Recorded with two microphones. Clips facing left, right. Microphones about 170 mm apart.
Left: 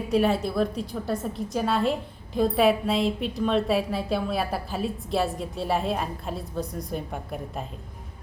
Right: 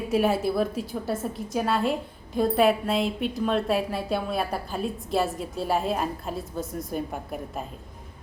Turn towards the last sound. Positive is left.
turn(degrees=0)  # may be behind; listen again after turning